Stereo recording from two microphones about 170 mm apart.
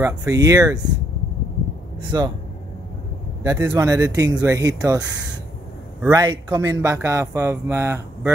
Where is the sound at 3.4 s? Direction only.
20° right (ahead or behind).